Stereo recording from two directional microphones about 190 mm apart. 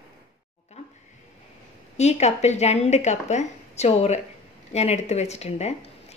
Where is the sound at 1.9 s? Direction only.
35° left (ahead or behind).